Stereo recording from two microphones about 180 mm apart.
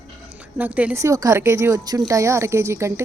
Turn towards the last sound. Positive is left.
turn(degrees=-15)  # may be behind; listen again after turning